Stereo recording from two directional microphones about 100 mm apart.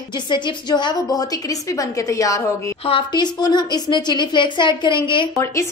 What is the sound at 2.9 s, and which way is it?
Speech, 60° left (ahead or behind).